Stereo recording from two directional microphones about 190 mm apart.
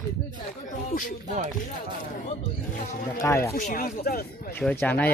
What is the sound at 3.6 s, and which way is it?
Speech, 45° left (ahead or behind).